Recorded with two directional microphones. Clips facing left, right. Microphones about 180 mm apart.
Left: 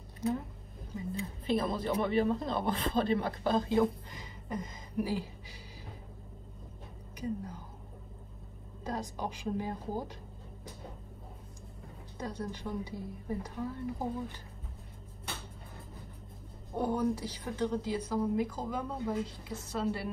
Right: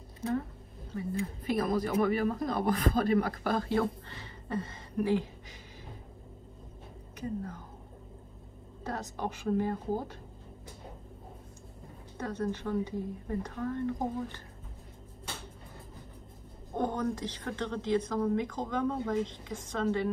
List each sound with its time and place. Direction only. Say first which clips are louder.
1.4 s a man's voice: right 1 dB; 25° left (ahead or behind); by 5.6 s 10° left (ahead or behind)
7.2 s a woman's voice: right 1 dB; 10° left (ahead or behind)
8.8 s a woman's voice: right 1 dB; 10° left (ahead or behind)
12.2 s a woman's voice: right 5 dB; 10° left (ahead or behind)
16.7 s a woman's voice: left 1 dB; 10° left (ahead or behind)